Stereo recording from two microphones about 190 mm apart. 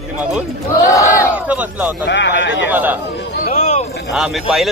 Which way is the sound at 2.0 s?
70° left (ahead or behind).